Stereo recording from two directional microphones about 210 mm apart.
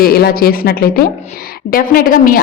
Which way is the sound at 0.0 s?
45° left (ahead or behind).